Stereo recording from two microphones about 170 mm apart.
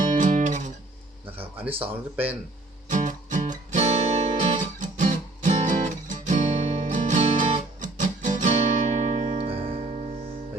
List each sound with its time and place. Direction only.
0.2 s guitar: 45° right (ahead or behind)
1.8 s speech: 10° right (ahead or behind)
2.9 s guitar: 50° right (ahead or behind)
7.4 s music: 45° right (ahead or behind)